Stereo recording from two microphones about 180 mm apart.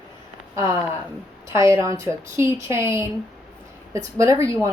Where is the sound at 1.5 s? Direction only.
15° right (ahead or behind).